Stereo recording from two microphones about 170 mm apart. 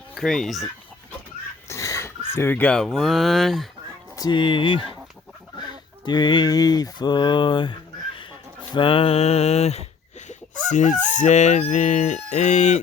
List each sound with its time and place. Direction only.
0.1 s speech: centre (ahead or behind)
1.6 s speech: 15° left (ahead or behind); by 3.7 s centre (ahead or behind)
4.2 s speech: 25° left (ahead or behind)
6.1 s a sound: 25° left (ahead or behind)
8.7 s mantra: 30° left (ahead or behind)
10.7 s fowl: 45° left (ahead or behind)